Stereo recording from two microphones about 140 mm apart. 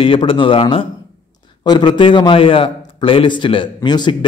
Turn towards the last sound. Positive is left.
turn(degrees=30)  # may be behind; listen again after turning